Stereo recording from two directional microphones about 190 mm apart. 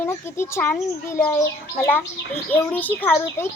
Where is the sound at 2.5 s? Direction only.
10° left (ahead or behind).